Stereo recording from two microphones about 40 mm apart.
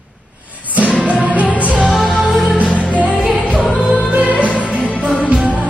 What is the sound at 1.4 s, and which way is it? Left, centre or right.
Music, right.